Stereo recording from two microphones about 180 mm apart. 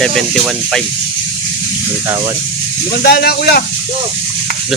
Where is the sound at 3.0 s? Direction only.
60° left (ahead or behind).